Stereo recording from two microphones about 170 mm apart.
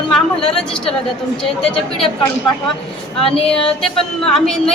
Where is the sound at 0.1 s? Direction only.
5° left (ahead or behind).